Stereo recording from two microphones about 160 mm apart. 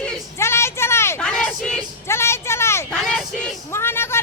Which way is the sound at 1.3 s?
5° left (ahead or behind).